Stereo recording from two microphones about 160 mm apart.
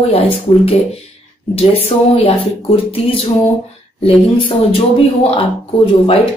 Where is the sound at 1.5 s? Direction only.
35° left (ahead or behind).